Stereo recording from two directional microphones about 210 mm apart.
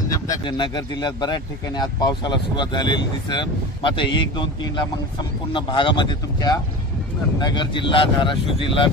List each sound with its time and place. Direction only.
0.1 s speech: 20° left (ahead or behind)